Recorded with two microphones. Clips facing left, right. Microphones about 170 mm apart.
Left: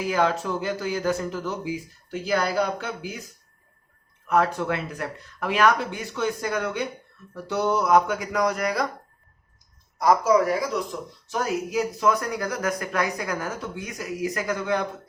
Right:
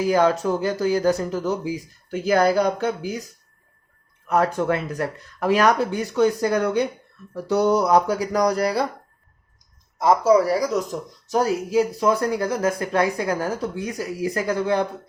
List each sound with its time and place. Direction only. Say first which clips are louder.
0.1 s speech: right 4 dB; 40° right (ahead or behind)
4.3 s speech: right 3 dB; 40° right (ahead or behind)
10.0 s speech: right 3 dB; 25° right (ahead or behind)